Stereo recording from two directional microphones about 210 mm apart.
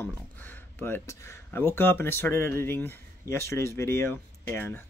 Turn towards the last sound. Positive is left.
turn(degrees=10)  # may be behind; listen again after turning